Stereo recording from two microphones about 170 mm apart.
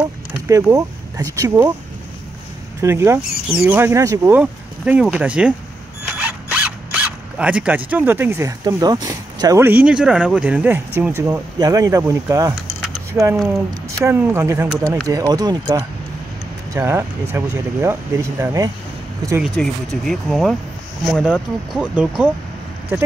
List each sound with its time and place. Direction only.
0.5 s speech: 15° right (ahead or behind)
2.8 s speech: 15° right (ahead or behind)
19.6 s speech: 5° left (ahead or behind)